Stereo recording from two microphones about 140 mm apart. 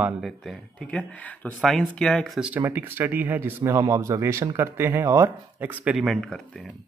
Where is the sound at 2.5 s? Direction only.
15° right (ahead or behind).